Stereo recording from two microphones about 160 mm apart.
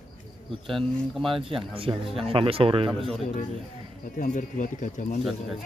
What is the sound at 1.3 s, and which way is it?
A man's voice, 35° right (ahead or behind).